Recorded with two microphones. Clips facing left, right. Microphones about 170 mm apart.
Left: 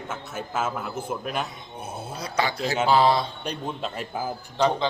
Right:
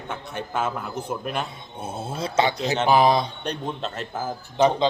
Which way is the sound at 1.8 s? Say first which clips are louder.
Right 5 dB; 25° right (ahead or behind).